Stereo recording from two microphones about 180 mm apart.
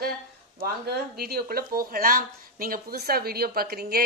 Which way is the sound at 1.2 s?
60° right (ahead or behind).